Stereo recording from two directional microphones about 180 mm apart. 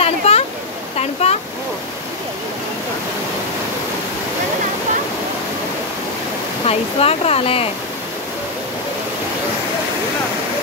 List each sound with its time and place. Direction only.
0.2 s a sound: 35° left (ahead or behind)
0.9 s waterfall: 35° left (ahead or behind)
6.6 s speech: 35° left (ahead or behind)